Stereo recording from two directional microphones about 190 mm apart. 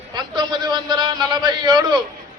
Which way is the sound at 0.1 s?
25° right (ahead or behind).